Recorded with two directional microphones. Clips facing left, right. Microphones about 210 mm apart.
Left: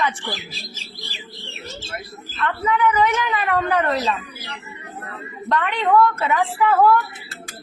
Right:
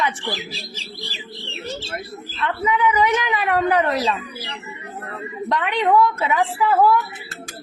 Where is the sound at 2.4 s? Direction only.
15° right (ahead or behind).